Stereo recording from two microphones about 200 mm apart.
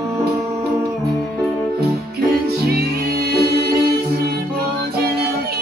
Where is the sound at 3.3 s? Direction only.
50° right (ahead or behind).